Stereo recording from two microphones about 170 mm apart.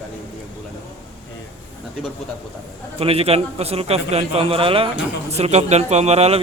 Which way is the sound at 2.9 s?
35° right (ahead or behind).